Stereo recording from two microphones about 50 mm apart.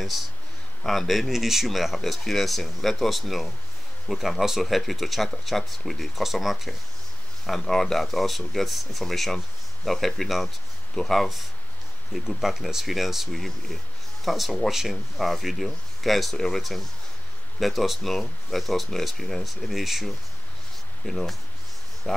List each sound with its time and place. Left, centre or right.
0.8 s speech: centre
12.3 s speech: centre
22.0 s speech: centre